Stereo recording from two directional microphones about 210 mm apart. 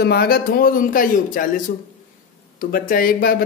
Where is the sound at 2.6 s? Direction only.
40° left (ahead or behind).